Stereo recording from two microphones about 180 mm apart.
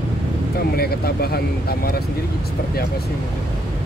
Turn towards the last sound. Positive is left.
turn(degrees=60)  # may be behind; listen again after turning